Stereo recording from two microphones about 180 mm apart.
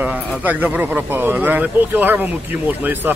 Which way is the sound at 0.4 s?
10° right (ahead or behind).